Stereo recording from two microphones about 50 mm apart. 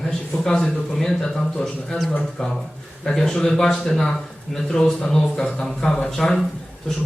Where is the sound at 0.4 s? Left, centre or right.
Centre.